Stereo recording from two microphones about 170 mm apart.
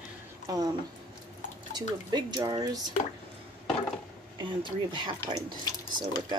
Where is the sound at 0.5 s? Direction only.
20° right (ahead or behind).